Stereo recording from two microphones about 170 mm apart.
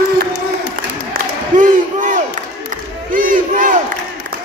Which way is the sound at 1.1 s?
50° right (ahead or behind).